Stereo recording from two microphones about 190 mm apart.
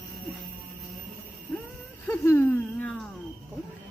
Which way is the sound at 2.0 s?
15° left (ahead or behind).